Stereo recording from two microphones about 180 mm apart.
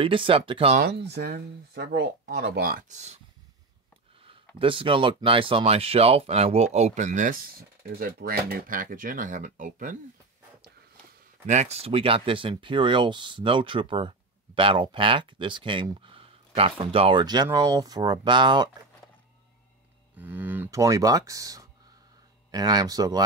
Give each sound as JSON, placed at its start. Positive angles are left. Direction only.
{"t": 0.0, "sound": "speech", "side_deg": -30}
{"t": 0.7, "sound": "speech", "side_deg": -65}
{"t": 4.6, "sound": "speech", "side_deg": -30}
{"t": 8.0, "sound": "speech", "side_deg": -55}
{"t": 11.4, "sound": "speech", "side_deg": -40}
{"t": 20.2, "sound": "speech", "side_deg": -10}